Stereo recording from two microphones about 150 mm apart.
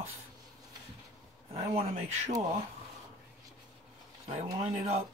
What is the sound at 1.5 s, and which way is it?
Speech, 40° right (ahead or behind).